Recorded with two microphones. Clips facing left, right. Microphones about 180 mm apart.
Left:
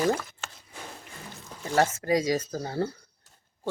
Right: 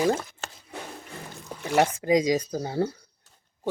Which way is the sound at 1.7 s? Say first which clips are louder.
Right 3 dB; 15° right (ahead or behind).